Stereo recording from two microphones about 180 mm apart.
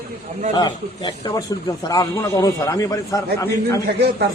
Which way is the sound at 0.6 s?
25° left (ahead or behind).